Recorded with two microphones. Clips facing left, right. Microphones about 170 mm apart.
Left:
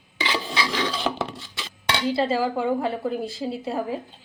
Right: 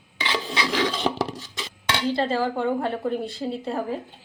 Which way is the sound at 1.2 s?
35° right (ahead or behind).